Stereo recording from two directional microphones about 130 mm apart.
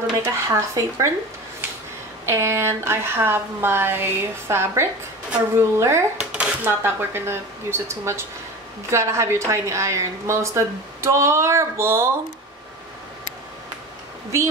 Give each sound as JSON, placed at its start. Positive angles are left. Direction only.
{"t": 0.2, "sound": "a woman's voice", "side_deg": -25}
{"t": 2.2, "sound": "a woman's voice", "side_deg": -20}